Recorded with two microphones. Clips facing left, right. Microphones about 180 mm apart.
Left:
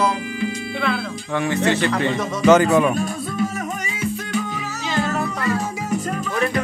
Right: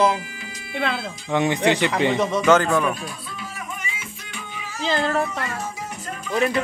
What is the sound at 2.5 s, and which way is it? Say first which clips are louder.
Music: left 4 dB; 10° left (ahead or behind).